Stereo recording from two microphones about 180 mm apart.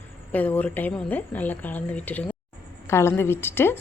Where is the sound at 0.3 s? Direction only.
10° left (ahead or behind).